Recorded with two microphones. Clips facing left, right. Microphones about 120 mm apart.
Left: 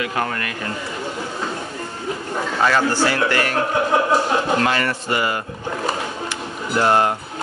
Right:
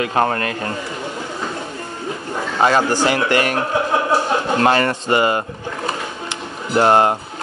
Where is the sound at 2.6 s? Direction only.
20° right (ahead or behind).